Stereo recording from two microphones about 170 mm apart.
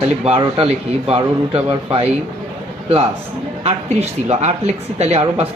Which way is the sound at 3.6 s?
40° right (ahead or behind).